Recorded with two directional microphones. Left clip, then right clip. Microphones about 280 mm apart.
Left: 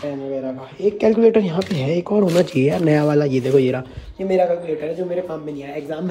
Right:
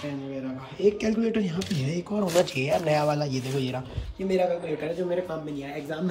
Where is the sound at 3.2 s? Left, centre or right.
Centre.